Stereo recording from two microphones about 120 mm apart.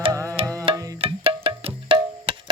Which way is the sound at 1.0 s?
50° right (ahead or behind).